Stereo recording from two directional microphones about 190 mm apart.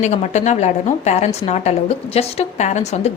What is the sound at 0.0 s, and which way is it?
A woman's voice, 35° left (ahead or behind).